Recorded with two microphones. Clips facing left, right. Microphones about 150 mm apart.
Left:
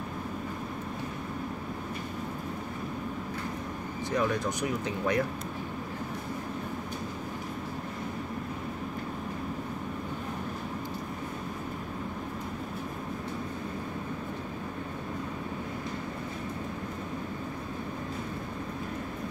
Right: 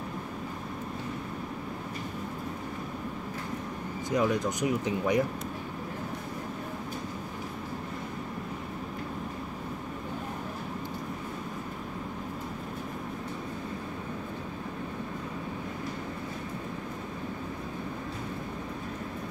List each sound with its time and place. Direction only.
4.1 s speech: 15° right (ahead or behind)